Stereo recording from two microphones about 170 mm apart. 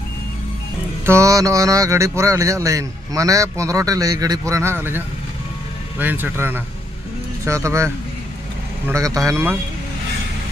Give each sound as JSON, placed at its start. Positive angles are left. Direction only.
{"t": 1.0, "sound": "speech", "side_deg": -15}